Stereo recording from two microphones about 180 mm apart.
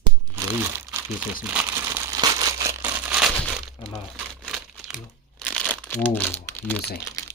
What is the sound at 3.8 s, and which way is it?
Crumpling, 5° left (ahead or behind).